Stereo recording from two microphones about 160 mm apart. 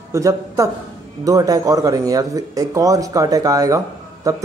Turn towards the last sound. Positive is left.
turn(degrees=-20)  # may be behind; listen again after turning